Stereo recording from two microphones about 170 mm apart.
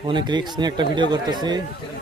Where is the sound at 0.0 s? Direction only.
25° right (ahead or behind).